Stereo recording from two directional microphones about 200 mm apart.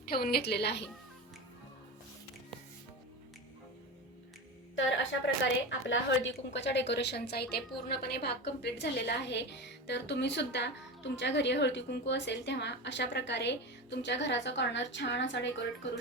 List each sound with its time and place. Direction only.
0.1 s a woman's voice: 50° left (ahead or behind)
4.7 s a woman's voice: 65° left (ahead or behind)